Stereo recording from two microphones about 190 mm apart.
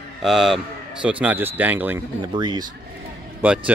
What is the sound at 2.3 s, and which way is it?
Speech, 25° right (ahead or behind).